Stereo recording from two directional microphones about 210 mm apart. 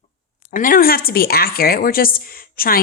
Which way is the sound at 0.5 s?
40° left (ahead or behind).